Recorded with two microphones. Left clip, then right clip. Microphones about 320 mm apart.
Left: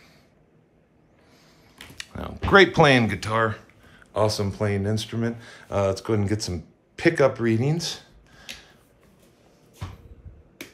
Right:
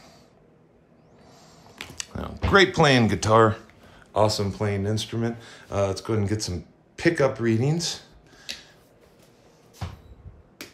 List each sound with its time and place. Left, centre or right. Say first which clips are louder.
1.3 s speech: right 4 dB; centre